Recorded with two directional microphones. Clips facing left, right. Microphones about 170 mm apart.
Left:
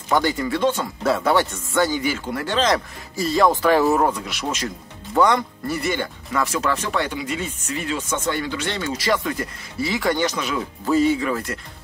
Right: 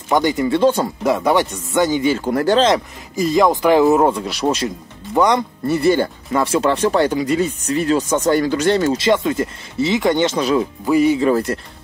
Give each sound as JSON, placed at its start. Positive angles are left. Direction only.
{"t": 0.1, "sound": "speech", "side_deg": -20}
{"t": 1.0, "sound": "speech", "side_deg": -15}
{"t": 2.1, "sound": "speech", "side_deg": -40}
{"t": 2.6, "sound": "speech", "side_deg": -20}
{"t": 4.6, "sound": "speech", "side_deg": -20}
{"t": 5.8, "sound": "speech", "side_deg": -30}
{"t": 8.9, "sound": "speech", "side_deg": -25}
{"t": 10.9, "sound": "speech", "side_deg": -15}
{"t": 11.1, "sound": "speech", "side_deg": -35}